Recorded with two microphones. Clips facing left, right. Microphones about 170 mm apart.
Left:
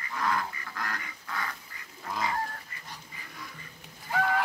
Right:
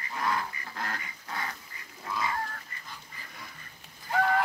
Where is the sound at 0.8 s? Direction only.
25° right (ahead or behind).